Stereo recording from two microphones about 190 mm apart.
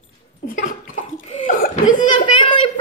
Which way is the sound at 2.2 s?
25° left (ahead or behind).